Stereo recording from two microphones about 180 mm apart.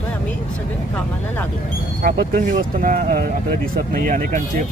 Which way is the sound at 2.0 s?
50° right (ahead or behind).